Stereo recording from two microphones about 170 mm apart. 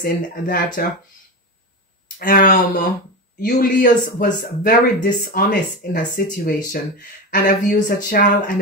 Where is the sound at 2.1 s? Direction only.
55° left (ahead or behind).